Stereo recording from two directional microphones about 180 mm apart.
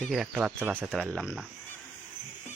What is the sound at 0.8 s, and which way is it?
Speech, 5° left (ahead or behind).